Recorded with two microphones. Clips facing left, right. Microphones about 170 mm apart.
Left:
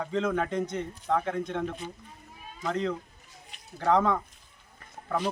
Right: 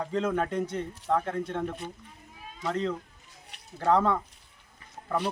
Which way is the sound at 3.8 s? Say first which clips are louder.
Even; centre (ahead or behind).